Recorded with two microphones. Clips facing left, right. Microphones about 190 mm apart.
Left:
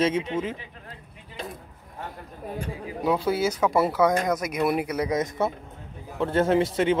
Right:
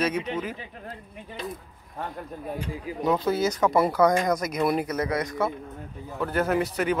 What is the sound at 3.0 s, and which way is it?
Speech, 10° left (ahead or behind).